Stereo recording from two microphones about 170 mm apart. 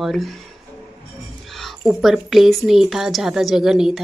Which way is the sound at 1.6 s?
Centre (ahead or behind).